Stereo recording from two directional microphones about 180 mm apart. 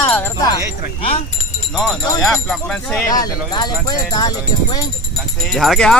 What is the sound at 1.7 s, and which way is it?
Speech, centre (ahead or behind).